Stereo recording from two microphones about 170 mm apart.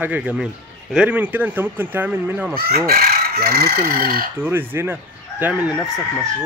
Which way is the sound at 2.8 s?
60° right (ahead or behind).